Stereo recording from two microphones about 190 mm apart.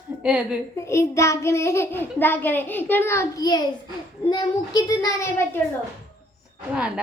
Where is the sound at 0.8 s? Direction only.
15° left (ahead or behind).